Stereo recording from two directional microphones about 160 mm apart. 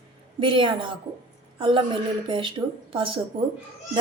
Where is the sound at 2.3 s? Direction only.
30° right (ahead or behind).